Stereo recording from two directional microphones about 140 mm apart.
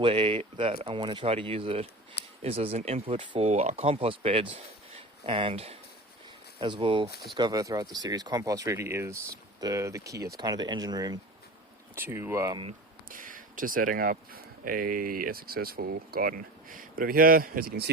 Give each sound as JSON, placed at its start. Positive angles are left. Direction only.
{"t": 0.0, "sound": "speech", "side_deg": -40}
{"t": 3.5, "sound": "speech", "side_deg": -55}
{"t": 11.9, "sound": "speech", "side_deg": -15}
{"t": 13.1, "sound": "speech", "side_deg": -75}